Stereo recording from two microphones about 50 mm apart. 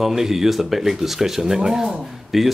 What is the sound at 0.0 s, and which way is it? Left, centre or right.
A woman's voice, centre.